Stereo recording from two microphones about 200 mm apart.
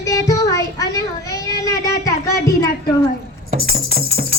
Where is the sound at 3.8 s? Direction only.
90° right.